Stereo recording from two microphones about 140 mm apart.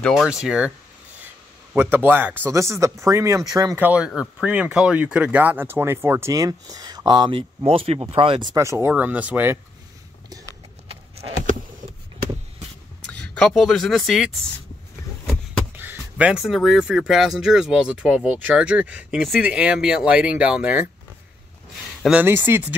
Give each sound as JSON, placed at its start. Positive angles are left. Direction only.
{"t": 0.0, "sound": "speech", "side_deg": 0}
{"t": 1.8, "sound": "speech", "side_deg": -15}
{"t": 3.8, "sound": "speech", "side_deg": -10}
{"t": 8.5, "sound": "speech", "side_deg": -20}
{"t": 13.3, "sound": "speech", "side_deg": 5}
{"t": 15.7, "sound": "speech", "side_deg": -15}
{"t": 22.2, "sound": "speech", "side_deg": -15}